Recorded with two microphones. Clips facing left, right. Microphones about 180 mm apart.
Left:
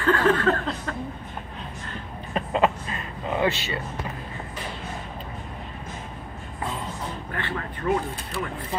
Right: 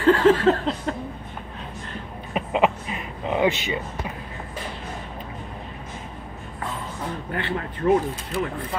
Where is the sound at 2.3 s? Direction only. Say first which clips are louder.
Right 1 dB; 10° right (ahead or behind).